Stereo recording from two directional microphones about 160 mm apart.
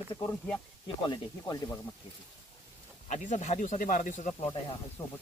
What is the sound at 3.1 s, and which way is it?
Speech, 50° left (ahead or behind).